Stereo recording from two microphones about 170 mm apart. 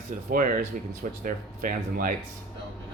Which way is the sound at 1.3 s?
50° right (ahead or behind).